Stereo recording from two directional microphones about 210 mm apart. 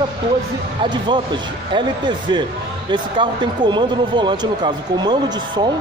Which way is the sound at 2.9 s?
20° right (ahead or behind).